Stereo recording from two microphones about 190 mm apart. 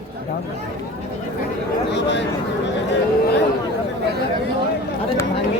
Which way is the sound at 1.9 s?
65° left (ahead or behind).